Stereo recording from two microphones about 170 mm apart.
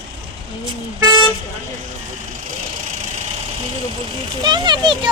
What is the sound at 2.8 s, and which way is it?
Engine, 45° right (ahead or behind).